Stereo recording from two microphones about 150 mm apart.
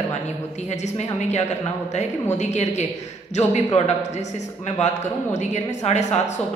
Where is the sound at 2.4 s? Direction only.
50° left (ahead or behind).